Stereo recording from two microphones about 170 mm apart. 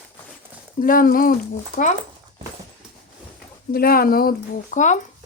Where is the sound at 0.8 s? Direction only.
55° left (ahead or behind).